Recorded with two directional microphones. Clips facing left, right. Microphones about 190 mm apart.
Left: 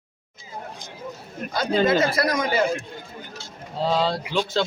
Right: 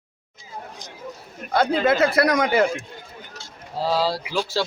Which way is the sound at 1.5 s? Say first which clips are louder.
Right 1 dB; 60° right (ahead or behind).